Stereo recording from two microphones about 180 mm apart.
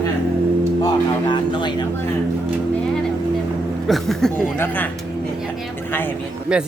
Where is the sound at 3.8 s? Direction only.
Centre (ahead or behind).